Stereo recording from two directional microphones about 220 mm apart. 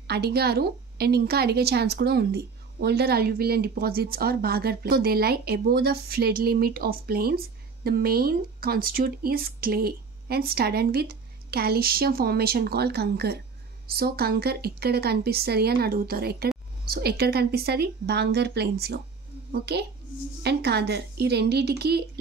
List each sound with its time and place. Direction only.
0.0 s a woman's voice: 45° right (ahead or behind)